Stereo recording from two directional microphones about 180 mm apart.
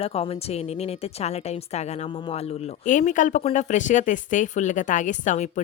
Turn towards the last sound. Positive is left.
turn(degrees=45)  # may be behind; listen again after turning